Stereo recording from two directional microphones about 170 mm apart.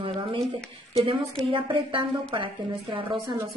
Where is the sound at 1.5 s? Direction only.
30° right (ahead or behind).